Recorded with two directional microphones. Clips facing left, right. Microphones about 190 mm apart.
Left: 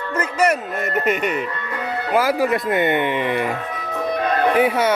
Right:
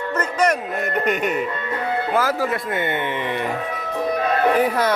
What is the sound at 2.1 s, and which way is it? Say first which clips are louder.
Speech: left 6 dB; 15° left (ahead or behind).